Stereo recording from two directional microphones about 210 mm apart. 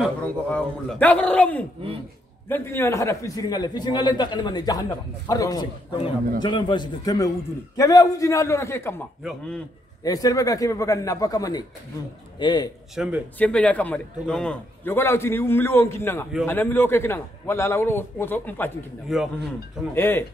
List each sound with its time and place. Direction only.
0.0 s a man's voice: 5° left (ahead or behind)
10.0 s a man's voice: 15° left (ahead or behind)
12.9 s a man's voice: 5° right (ahead or behind)